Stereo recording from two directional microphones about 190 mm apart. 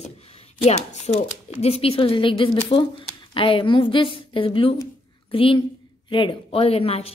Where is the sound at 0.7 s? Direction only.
35° left (ahead or behind).